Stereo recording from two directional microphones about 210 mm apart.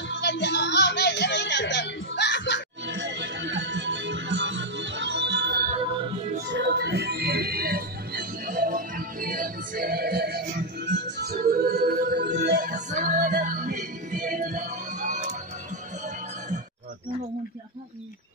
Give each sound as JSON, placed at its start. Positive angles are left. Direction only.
{"t": 0.1, "sound": "music", "side_deg": 55}
{"t": 2.9, "sound": "music", "side_deg": -55}